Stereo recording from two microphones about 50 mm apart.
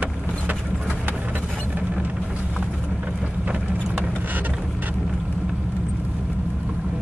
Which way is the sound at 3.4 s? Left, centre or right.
Right.